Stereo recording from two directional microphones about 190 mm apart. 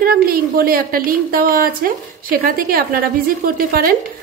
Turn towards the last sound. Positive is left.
turn(degrees=-50)  # may be behind; listen again after turning